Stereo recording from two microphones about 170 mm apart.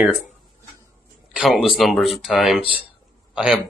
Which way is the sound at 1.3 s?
Centre (ahead or behind).